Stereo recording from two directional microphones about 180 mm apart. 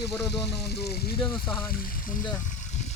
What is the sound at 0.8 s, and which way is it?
Speech, 15° left (ahead or behind).